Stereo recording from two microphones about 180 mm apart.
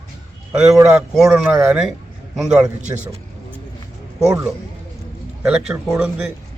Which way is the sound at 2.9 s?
15° right (ahead or behind).